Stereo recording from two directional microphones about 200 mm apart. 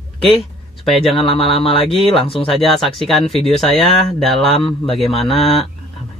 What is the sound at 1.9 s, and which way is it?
Speech, centre (ahead or behind).